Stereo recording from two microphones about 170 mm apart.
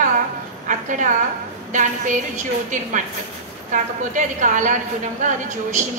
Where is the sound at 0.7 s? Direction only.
50° right (ahead or behind).